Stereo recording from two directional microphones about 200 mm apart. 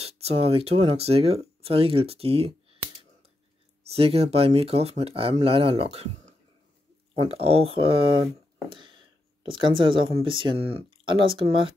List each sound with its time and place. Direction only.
0.0 s speech: 30° right (ahead or behind)
7.2 s speech: 30° right (ahead or behind)